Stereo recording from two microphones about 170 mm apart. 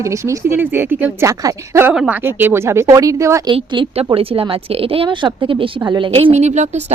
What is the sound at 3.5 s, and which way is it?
A woman's voice, 30° right (ahead or behind).